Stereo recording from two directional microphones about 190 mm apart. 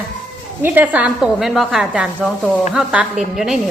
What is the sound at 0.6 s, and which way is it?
A woman's voice, 10° right (ahead or behind).